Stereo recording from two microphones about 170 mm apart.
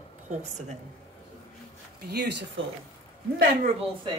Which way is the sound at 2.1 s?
75° right (ahead or behind).